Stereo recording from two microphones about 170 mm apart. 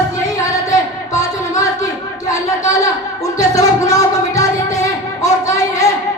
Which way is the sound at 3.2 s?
20° left (ahead or behind).